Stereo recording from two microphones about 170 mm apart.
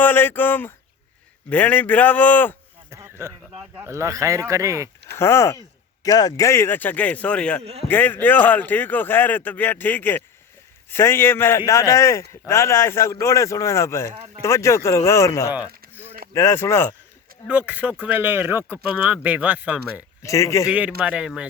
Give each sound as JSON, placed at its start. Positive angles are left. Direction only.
{"t": 0.0, "sound": "a man's voice", "side_deg": 10}
{"t": 2.9, "sound": "a sound", "side_deg": -15}
{"t": 3.8, "sound": "speech", "side_deg": -15}
{"t": 5.1, "sound": "a man's voice", "side_deg": 15}
{"t": 7.6, "sound": "a man's voice", "side_deg": -35}
{"t": 7.9, "sound": "a man's voice", "side_deg": 10}
{"t": 15.5, "sound": "a sound", "side_deg": -10}
{"t": 16.3, "sound": "a man's voice", "side_deg": 15}
{"t": 17.5, "sound": "speech", "side_deg": -10}
{"t": 20.2, "sound": "a man's voice", "side_deg": 20}
{"t": 20.7, "sound": "speech", "side_deg": -10}